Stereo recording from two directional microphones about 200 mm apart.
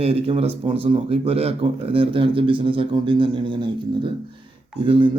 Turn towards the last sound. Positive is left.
turn(degrees=-25)  # may be behind; listen again after turning